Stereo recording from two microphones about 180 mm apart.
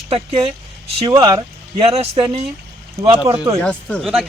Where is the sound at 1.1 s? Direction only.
20° right (ahead or behind).